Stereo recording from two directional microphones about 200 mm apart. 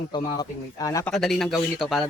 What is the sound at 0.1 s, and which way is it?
Speech, 20° left (ahead or behind).